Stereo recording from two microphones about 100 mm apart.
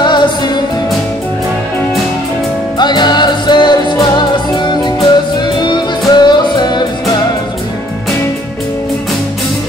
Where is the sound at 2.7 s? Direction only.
45° left (ahead or behind).